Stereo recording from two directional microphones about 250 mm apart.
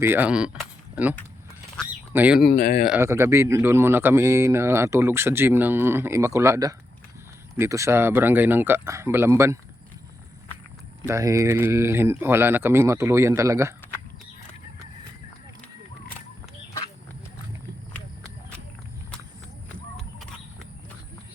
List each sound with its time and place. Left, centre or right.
0.0 s speech: centre
1.7 s duck: centre
2.4 s speech: left
2.8 s speech: centre
11.0 s speech: centre